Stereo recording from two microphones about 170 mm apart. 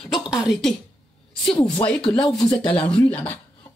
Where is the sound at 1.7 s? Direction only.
30° left (ahead or behind).